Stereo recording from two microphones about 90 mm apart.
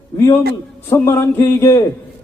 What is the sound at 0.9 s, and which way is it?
Speech, 30° left (ahead or behind).